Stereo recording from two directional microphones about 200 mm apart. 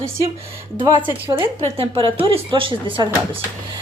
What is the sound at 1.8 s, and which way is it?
Speech, 25° right (ahead or behind).